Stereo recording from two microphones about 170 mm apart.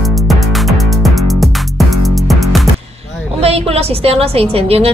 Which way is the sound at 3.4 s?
35° right (ahead or behind).